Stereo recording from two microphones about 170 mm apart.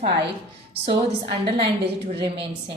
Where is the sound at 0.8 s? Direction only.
30° right (ahead or behind).